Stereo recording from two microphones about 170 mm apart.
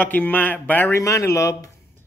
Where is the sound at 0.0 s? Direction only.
10° left (ahead or behind).